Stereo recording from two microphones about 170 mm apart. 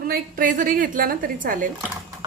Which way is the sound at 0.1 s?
55° right (ahead or behind).